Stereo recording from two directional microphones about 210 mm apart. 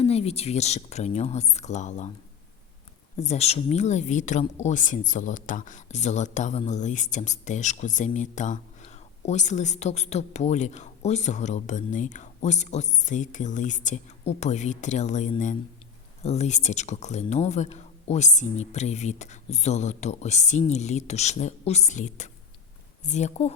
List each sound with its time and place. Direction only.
0.0 s speech: 30° left (ahead or behind)
3.2 s speech: 30° left (ahead or behind)